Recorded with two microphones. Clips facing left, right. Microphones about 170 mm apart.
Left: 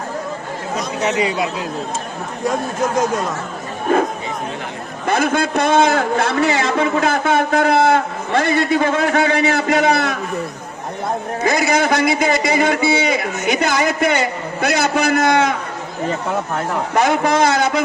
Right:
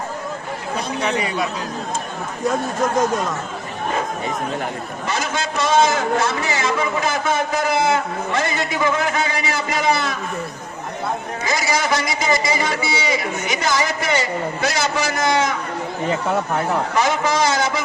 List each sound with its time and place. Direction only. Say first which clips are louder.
3.9 s a man's voice: left 7 dB; 55° left (ahead or behind)
11.4 s a man's voice: left 5 dB; 60° left (ahead or behind)
16.9 s a man's voice: left 7 dB; 60° left (ahead or behind)